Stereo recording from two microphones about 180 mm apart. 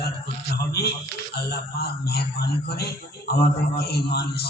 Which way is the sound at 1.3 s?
60° left (ahead or behind).